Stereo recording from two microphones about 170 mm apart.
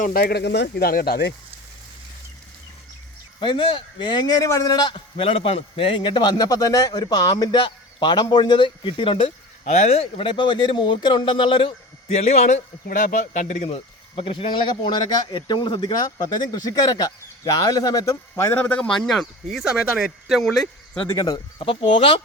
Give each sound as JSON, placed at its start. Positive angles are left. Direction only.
{"t": 0.0, "sound": "speech", "side_deg": 60}
{"t": 3.4, "sound": "a man's voice", "side_deg": 30}
{"t": 21.1, "sound": "a man's voice", "side_deg": 25}